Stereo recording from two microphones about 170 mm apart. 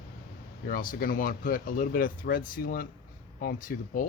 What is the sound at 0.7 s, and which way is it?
Speech, 55° left (ahead or behind).